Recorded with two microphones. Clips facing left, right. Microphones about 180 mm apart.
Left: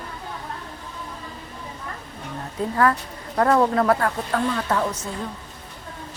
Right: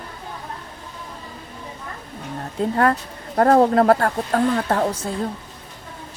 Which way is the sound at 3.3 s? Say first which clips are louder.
Right 4 dB; 40° right (ahead or behind).